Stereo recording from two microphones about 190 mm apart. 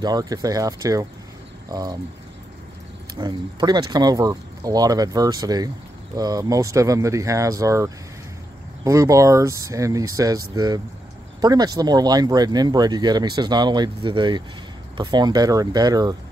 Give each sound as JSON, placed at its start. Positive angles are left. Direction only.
{"t": 0.0, "sound": "speech", "side_deg": -20}
{"t": 3.2, "sound": "speech", "side_deg": -20}